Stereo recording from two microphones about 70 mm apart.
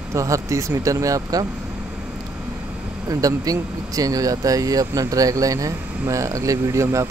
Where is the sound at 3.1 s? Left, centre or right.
Right.